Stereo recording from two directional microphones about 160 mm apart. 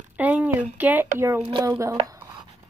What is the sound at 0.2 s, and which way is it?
Speech, 10° right (ahead or behind).